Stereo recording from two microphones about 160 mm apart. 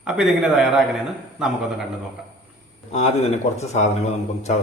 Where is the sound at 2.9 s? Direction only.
45° left (ahead or behind).